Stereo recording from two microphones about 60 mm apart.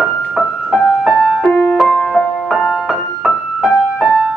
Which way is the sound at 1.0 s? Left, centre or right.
Centre.